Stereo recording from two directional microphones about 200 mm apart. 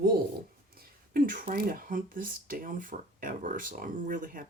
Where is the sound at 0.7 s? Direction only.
50° right (ahead or behind).